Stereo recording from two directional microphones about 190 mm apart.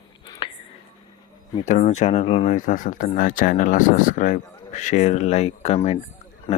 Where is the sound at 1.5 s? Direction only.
40° left (ahead or behind).